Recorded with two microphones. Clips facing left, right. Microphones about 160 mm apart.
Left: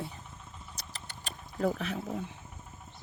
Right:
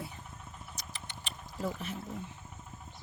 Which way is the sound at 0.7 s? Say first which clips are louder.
Even; 35° left (ahead or behind).